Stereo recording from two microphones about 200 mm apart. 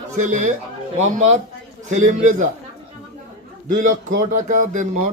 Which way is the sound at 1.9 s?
40° right (ahead or behind).